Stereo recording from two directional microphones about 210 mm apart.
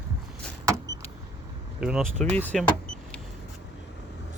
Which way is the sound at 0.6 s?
15° right (ahead or behind).